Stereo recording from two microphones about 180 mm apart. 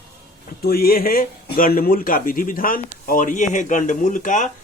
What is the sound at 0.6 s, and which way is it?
Speech, 55° left (ahead or behind).